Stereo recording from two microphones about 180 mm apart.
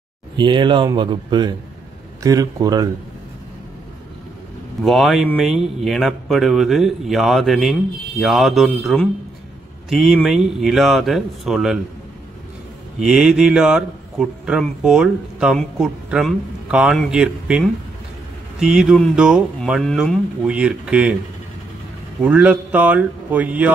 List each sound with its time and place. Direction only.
0.4 s speech: 25° right (ahead or behind)
4.8 s speech: centre (ahead or behind)
13.0 s speech: 5° right (ahead or behind)
22.2 s speech: 5° right (ahead or behind)